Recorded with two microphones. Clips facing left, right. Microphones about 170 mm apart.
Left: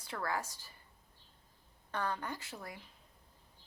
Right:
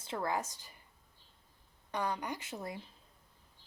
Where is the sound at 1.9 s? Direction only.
15° right (ahead or behind).